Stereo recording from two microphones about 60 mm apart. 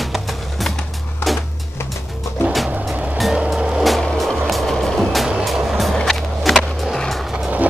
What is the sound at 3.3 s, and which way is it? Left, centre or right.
Music, centre.